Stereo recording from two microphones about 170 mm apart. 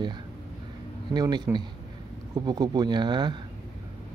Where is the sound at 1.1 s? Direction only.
25° right (ahead or behind).